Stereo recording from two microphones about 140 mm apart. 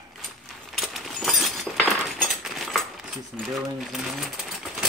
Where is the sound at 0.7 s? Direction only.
Centre (ahead or behind).